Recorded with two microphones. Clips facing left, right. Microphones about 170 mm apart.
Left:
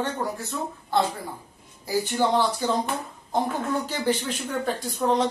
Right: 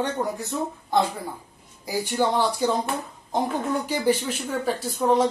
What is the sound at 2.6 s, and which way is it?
Speech, 15° right (ahead or behind).